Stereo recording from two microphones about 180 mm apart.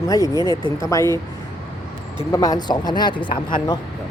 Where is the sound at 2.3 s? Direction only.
20° left (ahead or behind).